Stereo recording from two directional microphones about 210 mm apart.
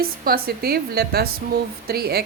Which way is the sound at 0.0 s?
45° right (ahead or behind).